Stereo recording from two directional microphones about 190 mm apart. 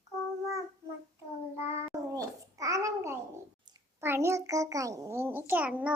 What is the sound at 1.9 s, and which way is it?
Babbling, 15° right (ahead or behind).